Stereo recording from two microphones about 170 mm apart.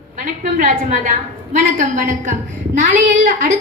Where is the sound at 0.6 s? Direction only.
50° right (ahead or behind).